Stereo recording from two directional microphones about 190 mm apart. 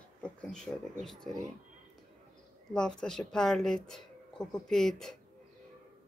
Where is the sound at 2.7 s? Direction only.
5° left (ahead or behind).